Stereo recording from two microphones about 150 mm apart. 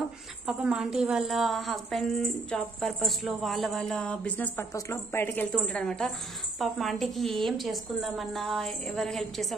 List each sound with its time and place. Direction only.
0.5 s a woman's voice: 5° right (ahead or behind); by 5.5 s 15° left (ahead or behind)
5.5 s a woman's voice: 5° left (ahead or behind)